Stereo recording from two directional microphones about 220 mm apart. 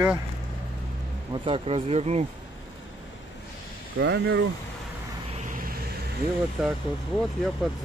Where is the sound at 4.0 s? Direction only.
50° right (ahead or behind).